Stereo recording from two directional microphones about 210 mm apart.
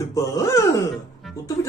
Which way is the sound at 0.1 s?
15° left (ahead or behind).